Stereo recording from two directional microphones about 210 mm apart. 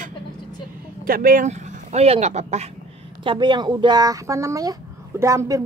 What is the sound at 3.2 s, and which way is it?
A woman's voice, 25° right (ahead or behind).